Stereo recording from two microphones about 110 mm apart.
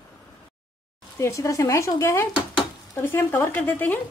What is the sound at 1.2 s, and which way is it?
Speech, 30° left (ahead or behind).